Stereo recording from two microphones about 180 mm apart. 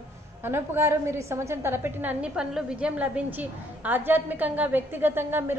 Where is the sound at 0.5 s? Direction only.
15° right (ahead or behind).